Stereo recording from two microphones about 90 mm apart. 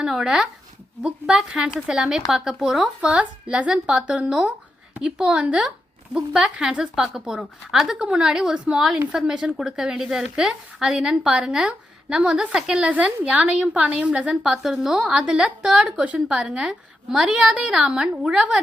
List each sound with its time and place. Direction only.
0.0 s speech: 5° right (ahead or behind)